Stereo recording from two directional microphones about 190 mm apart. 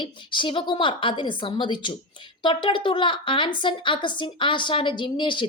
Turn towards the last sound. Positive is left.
turn(degrees=25)  # may be behind; listen again after turning